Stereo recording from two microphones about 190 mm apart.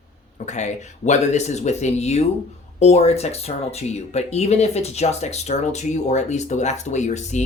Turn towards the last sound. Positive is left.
turn(degrees=40)  # may be behind; listen again after turning